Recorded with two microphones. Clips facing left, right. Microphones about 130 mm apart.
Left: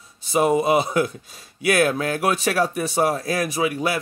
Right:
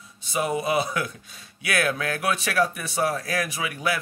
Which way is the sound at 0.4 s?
35° left (ahead or behind).